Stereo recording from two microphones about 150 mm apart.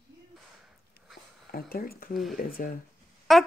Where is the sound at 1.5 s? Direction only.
80° left.